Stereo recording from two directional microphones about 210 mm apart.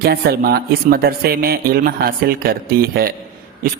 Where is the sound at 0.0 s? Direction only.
50° right (ahead or behind).